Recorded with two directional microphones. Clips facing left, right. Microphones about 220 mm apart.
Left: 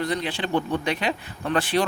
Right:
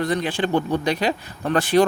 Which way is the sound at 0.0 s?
50° right (ahead or behind).